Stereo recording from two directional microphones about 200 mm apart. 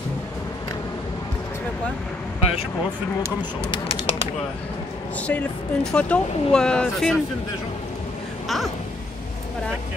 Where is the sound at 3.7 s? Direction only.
25° left (ahead or behind).